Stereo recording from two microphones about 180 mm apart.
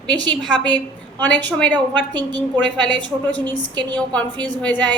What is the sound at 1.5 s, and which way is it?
A woman's voice, 5° left (ahead or behind).